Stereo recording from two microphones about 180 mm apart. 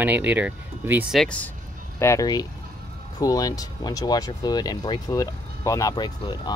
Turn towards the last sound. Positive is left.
turn(degrees=25)  # may be behind; listen again after turning